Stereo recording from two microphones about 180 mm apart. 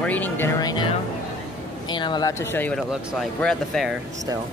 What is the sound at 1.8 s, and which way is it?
Speech, 25° left (ahead or behind).